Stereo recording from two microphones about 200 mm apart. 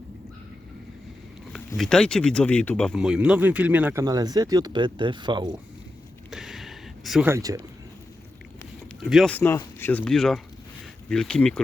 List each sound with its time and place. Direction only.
1.5 s speech: centre (ahead or behind)
4.0 s speech: 20° right (ahead or behind)
6.3 s a sound: centre (ahead or behind)
7.3 s speech: 15° right (ahead or behind)
9.0 s speech: centre (ahead or behind)